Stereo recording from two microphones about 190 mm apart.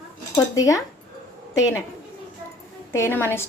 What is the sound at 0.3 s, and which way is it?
Speech, 15° left (ahead or behind).